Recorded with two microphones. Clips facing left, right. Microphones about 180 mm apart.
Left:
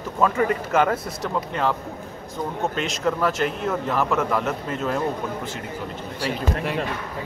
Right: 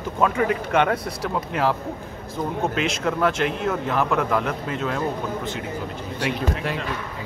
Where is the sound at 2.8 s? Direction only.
Centre (ahead or behind).